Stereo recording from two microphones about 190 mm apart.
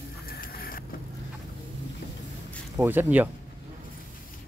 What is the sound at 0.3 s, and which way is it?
Vehicle, 50° left (ahead or behind).